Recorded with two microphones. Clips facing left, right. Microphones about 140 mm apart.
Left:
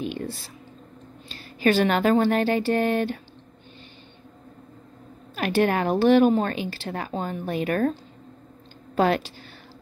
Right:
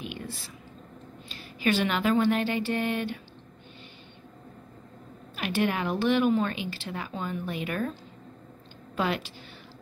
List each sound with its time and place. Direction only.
0.0 s a sound: 35° left (ahead or behind)
1.3 s speech: 40° left (ahead or behind)
5.3 s speech: 40° left (ahead or behind)
8.9 s a woman's voice: 40° left (ahead or behind)